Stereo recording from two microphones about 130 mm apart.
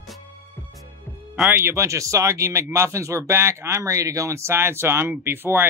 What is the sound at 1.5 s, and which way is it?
Speech, 20° right (ahead or behind).